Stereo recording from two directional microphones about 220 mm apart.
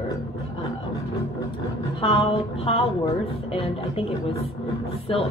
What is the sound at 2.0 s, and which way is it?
A woman's voice, 25° left (ahead or behind).